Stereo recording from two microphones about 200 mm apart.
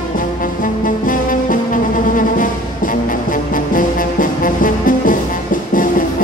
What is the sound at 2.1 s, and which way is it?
Music, 40° left (ahead or behind).